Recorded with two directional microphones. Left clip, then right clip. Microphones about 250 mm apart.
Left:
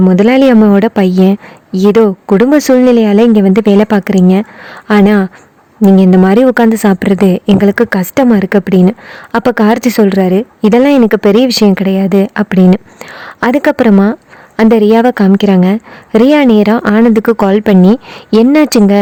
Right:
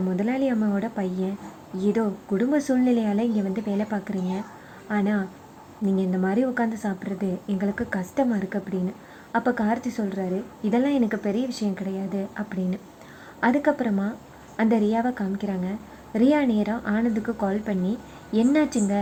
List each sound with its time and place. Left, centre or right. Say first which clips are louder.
0.1 s a woman's voice: left 18 dB; left